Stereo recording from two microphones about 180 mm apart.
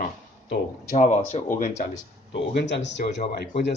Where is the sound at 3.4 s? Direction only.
65° left (ahead or behind).